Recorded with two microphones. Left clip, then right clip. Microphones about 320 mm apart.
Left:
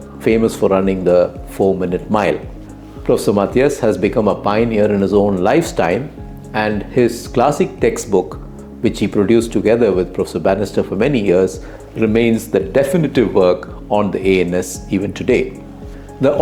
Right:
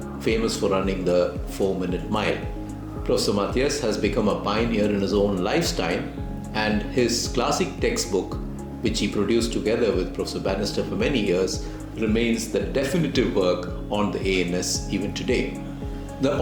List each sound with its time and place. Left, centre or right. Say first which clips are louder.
0.3 s speech: left 9 dB; left